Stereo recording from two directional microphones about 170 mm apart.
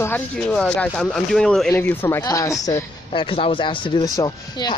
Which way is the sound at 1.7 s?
10° left (ahead or behind).